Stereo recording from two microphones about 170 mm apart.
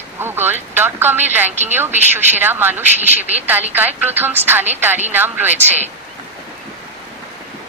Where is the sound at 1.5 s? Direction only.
40° right (ahead or behind).